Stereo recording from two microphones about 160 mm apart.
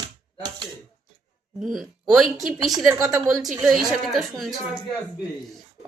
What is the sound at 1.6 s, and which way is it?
A woman's voice, centre (ahead or behind).